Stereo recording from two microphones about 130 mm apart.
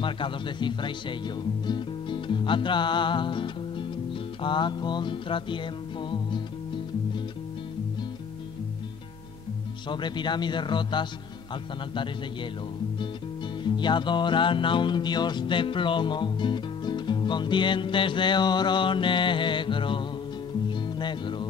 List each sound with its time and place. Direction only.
0.0 s music: 40° left (ahead or behind)
9.8 s music: 35° left (ahead or behind)
13.7 s music: 35° left (ahead or behind)